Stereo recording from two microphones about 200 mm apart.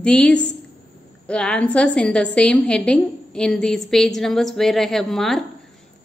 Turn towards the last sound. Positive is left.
turn(degrees=0)  # may be behind; listen again after turning